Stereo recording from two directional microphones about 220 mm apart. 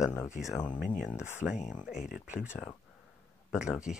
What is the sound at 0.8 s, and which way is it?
Speech, 35° left (ahead or behind).